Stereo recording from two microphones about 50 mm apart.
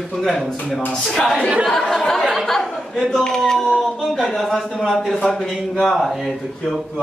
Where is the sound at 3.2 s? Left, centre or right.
Centre.